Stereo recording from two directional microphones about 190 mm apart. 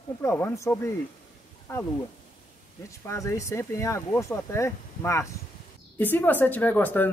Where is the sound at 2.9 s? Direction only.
15° left (ahead or behind).